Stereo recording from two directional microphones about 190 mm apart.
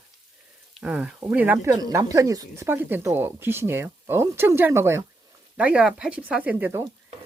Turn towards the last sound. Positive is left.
turn(degrees=-10)  # may be behind; listen again after turning